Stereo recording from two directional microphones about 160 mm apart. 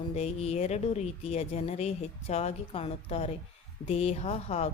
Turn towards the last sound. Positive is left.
turn(degrees=40)  # may be behind; listen again after turning